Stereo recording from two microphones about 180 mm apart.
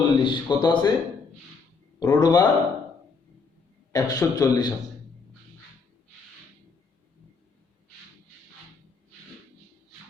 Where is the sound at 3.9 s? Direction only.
20° left (ahead or behind).